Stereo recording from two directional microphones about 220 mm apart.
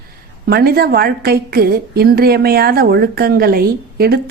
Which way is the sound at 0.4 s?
45° right (ahead or behind).